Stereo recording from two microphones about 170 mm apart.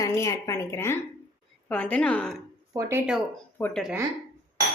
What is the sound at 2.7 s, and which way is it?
Speech, 15° right (ahead or behind).